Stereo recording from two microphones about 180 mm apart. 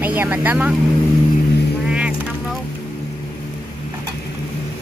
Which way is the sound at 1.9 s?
5° right (ahead or behind).